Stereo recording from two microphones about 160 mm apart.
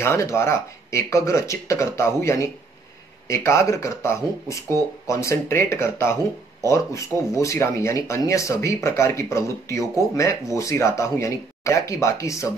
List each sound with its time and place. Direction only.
0.0 s speech: 15° left (ahead or behind)